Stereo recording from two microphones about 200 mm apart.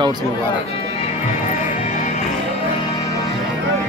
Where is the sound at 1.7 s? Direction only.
40° left (ahead or behind).